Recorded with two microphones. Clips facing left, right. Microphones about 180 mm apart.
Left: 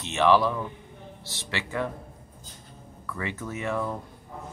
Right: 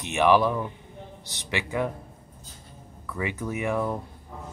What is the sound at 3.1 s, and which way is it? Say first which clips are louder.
Speech: right 3 dB; 15° right (ahead or behind).